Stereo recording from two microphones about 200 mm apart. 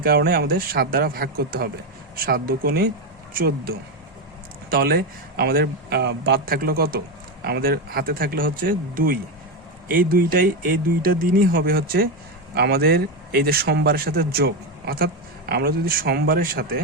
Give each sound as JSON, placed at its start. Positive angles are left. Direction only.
{"t": 0.0, "sound": "speech", "side_deg": -50}